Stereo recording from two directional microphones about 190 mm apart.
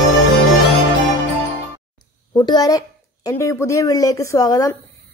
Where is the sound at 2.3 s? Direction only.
20° left (ahead or behind).